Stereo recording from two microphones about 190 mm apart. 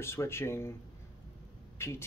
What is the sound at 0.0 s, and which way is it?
Speech, 15° left (ahead or behind).